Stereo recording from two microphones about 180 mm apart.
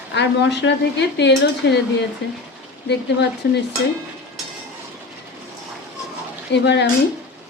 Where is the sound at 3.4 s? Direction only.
65° left (ahead or behind).